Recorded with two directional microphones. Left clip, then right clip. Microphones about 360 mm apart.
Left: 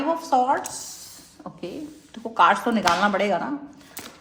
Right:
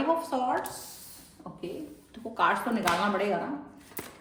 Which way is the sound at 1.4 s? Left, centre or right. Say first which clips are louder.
Left 6 dB; left.